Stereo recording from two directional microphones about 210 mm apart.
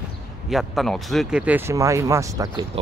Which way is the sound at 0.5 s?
Centre (ahead or behind).